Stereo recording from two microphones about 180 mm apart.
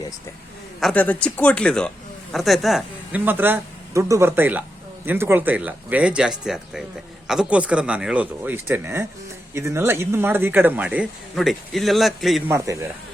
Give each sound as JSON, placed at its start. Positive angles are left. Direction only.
{"t": 0.8, "sound": "speech", "side_deg": 5}
{"t": 12.5, "sound": "speech", "side_deg": -20}